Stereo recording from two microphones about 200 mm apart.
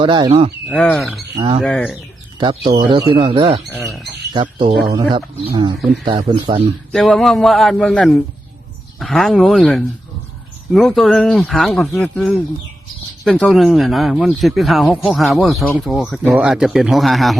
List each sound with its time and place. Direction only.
0.0 s a man's voice: 25° right (ahead or behind)
0.7 s speech: 5° left (ahead or behind)
1.4 s a man's voice: 25° right (ahead or behind)
1.6 s speech: 5° left (ahead or behind)
2.4 s a man's voice: 25° right (ahead or behind)
6.9 s speech: centre (ahead or behind)